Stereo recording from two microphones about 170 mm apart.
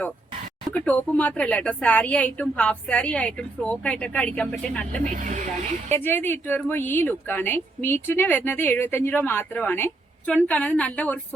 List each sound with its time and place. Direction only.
0.7 s a woman's voice: 5° left (ahead or behind)
5.1 s speech: 50° right (ahead or behind)
5.9 s a woman's voice: 10° left (ahead or behind)